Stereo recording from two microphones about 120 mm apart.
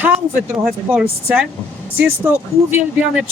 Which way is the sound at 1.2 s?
10° right (ahead or behind).